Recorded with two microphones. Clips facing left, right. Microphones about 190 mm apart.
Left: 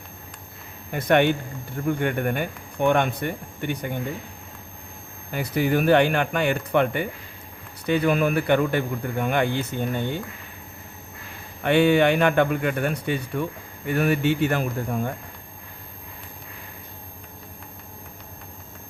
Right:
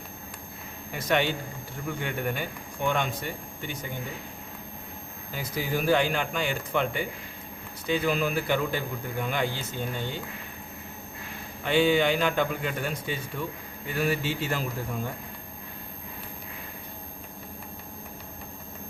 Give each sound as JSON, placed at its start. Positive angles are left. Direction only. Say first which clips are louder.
{"t": 0.9, "sound": "speech", "louder": "left 7 dB", "side_deg": 55}
{"t": 5.3, "sound": "speech", "louder": "left 8 dB", "side_deg": 60}
{"t": 11.6, "sound": "speech", "louder": "left 5 dB", "side_deg": 60}